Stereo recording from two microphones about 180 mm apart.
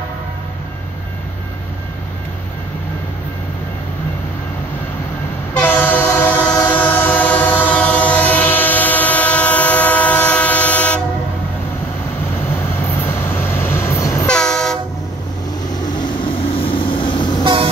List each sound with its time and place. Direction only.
5.5 s train: 10° left (ahead or behind)
12.5 s train: 15° left (ahead or behind)
14.2 s train: 5° left (ahead or behind)
16.0 s vehicle: 30° left (ahead or behind)